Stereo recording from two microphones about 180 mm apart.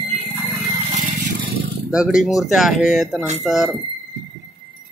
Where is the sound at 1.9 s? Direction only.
5° right (ahead or behind).